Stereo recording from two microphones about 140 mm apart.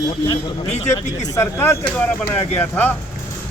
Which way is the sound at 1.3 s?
20° left (ahead or behind).